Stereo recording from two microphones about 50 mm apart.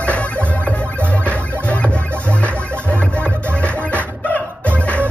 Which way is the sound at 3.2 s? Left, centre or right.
Left.